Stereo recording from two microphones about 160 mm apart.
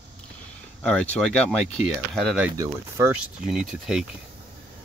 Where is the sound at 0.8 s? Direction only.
5° left (ahead or behind).